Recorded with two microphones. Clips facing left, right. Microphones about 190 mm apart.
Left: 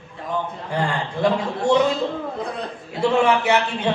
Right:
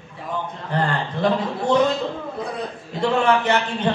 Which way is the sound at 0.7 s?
10° left (ahead or behind).